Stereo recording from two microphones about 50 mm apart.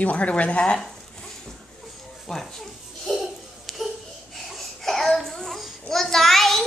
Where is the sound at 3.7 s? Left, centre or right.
Centre.